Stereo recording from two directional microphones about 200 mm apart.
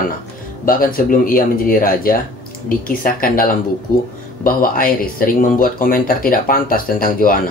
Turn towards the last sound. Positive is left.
turn(degrees=45)  # may be behind; listen again after turning